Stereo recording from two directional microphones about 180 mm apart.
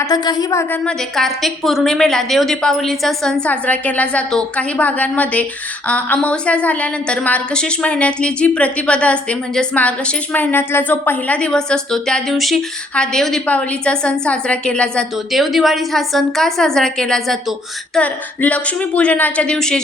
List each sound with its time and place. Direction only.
0.0 s a woman's voice: 20° left (ahead or behind)
0.7 s a woman's voice: 5° left (ahead or behind)